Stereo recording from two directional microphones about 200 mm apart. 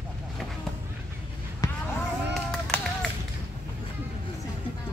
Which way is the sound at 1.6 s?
15° left (ahead or behind).